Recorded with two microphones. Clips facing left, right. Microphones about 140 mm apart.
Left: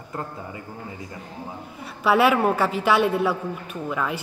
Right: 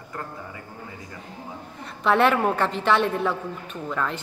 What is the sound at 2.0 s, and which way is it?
A woman's voice, 5° left (ahead or behind).